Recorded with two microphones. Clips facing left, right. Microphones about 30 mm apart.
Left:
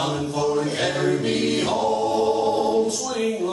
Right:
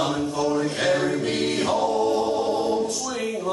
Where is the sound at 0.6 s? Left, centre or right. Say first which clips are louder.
Left 1 dB; left.